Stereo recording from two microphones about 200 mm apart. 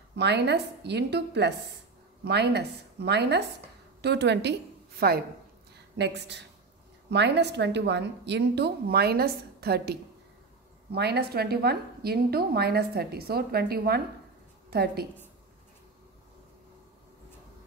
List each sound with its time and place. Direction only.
0.1 s a woman's voice: 60° right (ahead or behind)